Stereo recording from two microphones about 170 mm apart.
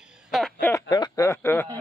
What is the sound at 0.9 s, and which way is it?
Speech, 20° left (ahead or behind).